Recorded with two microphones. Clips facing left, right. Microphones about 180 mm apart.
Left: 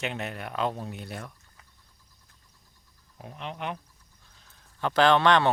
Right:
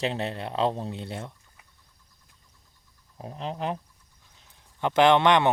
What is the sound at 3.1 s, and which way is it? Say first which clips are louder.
Speech: right 4 dB; 35° right (ahead or behind).